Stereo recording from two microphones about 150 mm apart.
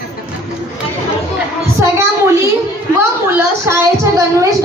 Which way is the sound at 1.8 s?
20° right (ahead or behind).